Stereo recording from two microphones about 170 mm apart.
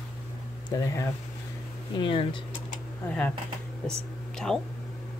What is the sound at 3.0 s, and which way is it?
Speech, 10° left (ahead or behind).